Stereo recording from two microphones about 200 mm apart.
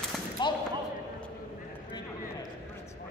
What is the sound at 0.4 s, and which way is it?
Basketball bounce, 20° left (ahead or behind).